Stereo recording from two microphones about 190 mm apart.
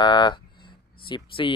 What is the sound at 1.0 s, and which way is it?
Speech, 25° left (ahead or behind).